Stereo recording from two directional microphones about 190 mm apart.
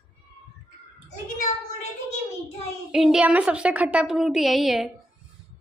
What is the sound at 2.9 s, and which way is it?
A woman's voice, 5° right (ahead or behind).